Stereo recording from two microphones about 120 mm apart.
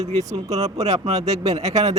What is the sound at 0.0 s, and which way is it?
Speech, 65° right (ahead or behind).